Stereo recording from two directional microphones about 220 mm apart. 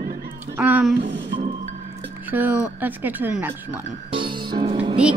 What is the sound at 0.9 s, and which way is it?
Music, 50° right (ahead or behind).